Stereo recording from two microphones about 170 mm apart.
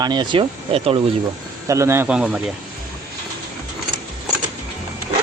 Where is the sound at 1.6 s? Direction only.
15° right (ahead or behind).